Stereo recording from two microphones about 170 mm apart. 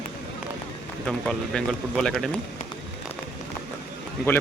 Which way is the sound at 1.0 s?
5° left (ahead or behind).